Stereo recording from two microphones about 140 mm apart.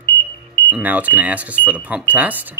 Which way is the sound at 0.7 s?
10° right (ahead or behind).